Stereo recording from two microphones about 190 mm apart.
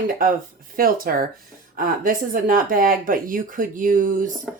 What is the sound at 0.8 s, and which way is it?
Speech, 50° right (ahead or behind).